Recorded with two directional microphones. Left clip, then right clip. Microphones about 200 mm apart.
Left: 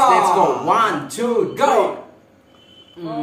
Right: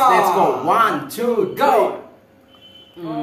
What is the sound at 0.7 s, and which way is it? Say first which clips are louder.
Speech: right 1 dB; 5° right (ahead or behind).